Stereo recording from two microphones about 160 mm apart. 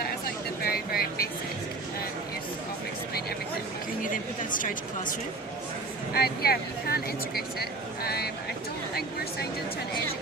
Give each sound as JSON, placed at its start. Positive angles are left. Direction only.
{"t": 0.6, "sound": "vehicle", "side_deg": 70}
{"t": 4.0, "sound": "a sound", "side_deg": 60}
{"t": 6.1, "sound": "speech", "side_deg": 75}